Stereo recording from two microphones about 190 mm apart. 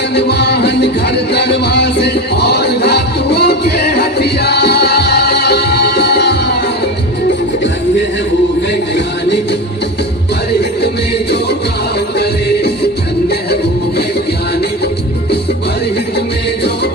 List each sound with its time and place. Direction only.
0.1 s music: 60° left (ahead or behind)
8.7 s music: 65° left (ahead or behind)
12.2 s music: 60° left (ahead or behind)